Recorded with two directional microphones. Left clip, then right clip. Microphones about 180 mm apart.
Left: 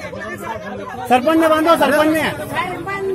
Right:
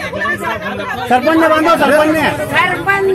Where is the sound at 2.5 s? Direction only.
15° left (ahead or behind).